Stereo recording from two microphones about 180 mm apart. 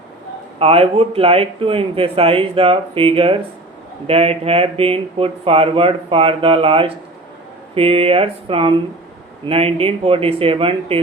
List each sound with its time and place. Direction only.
0.6 s speech: 35° right (ahead or behind)